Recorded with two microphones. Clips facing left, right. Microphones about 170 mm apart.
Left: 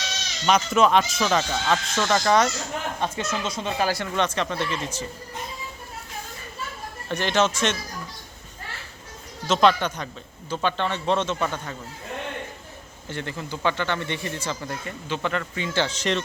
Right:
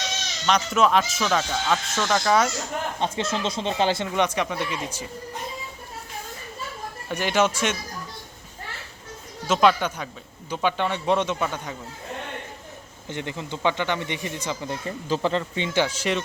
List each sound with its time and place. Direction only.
0.4 s speech: centre (ahead or behind)
3.0 s speech: 25° right (ahead or behind)
7.1 s speech: 10° right (ahead or behind)
9.5 s speech: 10° right (ahead or behind)
13.1 s speech: 20° right (ahead or behind)
14.8 s speech: 35° right (ahead or behind); by 16.2 s 10° right (ahead or behind)